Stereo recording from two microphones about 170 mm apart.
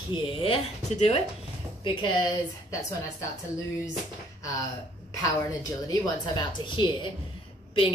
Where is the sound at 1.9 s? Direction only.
30° left (ahead or behind).